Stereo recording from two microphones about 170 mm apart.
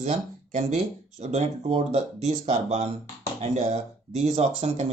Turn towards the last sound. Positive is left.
turn(degrees=-40)  # may be behind; listen again after turning